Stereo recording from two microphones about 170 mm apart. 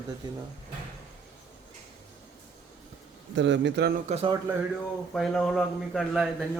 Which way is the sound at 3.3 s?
90° right.